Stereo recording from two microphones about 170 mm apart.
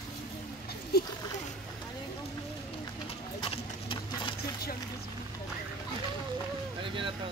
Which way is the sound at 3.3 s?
30° left (ahead or behind).